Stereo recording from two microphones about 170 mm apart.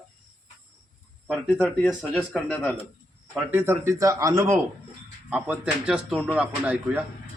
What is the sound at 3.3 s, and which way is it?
A man's voice, 10° right (ahead or behind).